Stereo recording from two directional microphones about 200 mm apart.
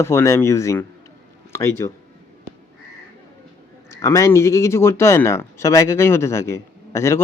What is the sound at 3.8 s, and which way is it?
Speech, 15° left (ahead or behind).